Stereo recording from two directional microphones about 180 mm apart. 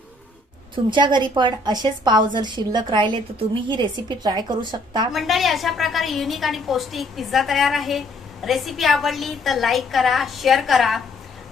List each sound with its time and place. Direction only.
0.9 s a woman's voice: 25° right (ahead or behind)
5.1 s a woman's voice: centre (ahead or behind)